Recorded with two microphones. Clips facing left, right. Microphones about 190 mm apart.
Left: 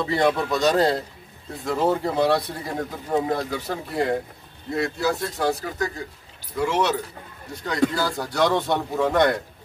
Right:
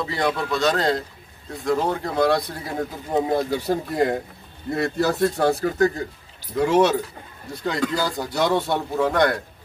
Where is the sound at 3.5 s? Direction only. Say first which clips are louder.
Right 4 dB; 40° right (ahead or behind).